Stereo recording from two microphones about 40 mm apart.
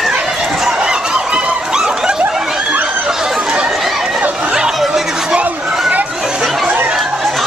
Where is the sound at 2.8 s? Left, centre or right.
Right.